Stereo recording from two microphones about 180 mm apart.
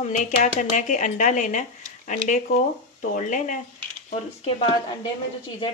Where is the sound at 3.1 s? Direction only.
45° left (ahead or behind).